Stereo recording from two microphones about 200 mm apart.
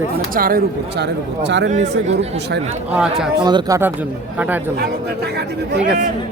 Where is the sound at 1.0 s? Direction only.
60° right (ahead or behind).